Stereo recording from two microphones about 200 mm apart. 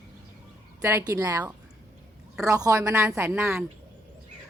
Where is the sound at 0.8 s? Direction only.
15° right (ahead or behind).